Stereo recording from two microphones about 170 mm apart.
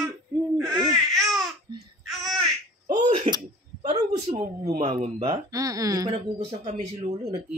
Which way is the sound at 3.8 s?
40° right (ahead or behind).